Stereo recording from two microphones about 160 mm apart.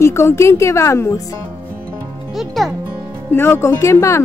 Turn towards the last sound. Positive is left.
turn(degrees=20)  # may be behind; listen again after turning